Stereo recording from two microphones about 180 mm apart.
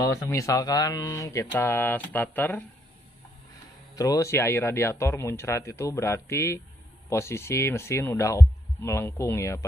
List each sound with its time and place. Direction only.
0.0 s speech: 20° left (ahead or behind)
3.9 s speech: 20° left (ahead or behind)